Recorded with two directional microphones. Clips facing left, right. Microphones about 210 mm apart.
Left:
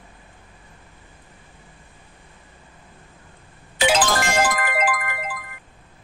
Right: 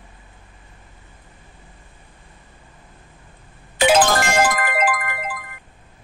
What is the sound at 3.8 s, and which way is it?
Music, 55° right (ahead or behind).